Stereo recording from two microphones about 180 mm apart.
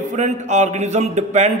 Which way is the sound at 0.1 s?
40° right (ahead or behind).